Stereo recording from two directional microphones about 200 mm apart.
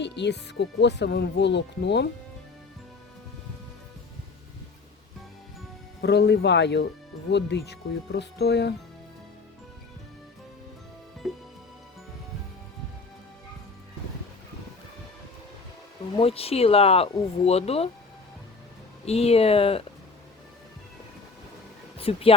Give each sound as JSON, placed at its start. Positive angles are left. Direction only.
{"t": 0.0, "sound": "speech", "side_deg": 60}
{"t": 6.0, "sound": "speech", "side_deg": 55}
{"t": 16.1, "sound": "speech", "side_deg": 30}
{"t": 19.0, "sound": "speech", "side_deg": 30}
{"t": 21.9, "sound": "speech", "side_deg": 30}